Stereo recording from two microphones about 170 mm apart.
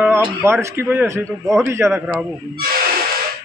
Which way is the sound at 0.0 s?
10° right (ahead or behind).